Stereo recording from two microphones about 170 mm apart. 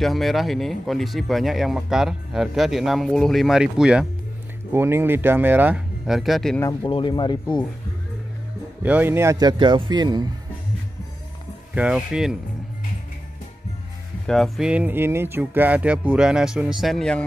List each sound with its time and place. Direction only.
0.0 s speech: centre (ahead or behind)
6.8 s speech: 30° left (ahead or behind)
8.8 s speech: 10° right (ahead or behind)
11.7 s speech: 5° right (ahead or behind)
14.2 s speech: centre (ahead or behind)